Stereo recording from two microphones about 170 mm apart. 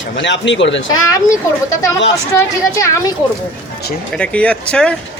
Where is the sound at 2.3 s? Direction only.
20° left (ahead or behind).